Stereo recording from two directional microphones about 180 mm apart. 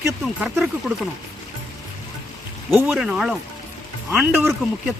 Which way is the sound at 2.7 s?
5° right (ahead or behind).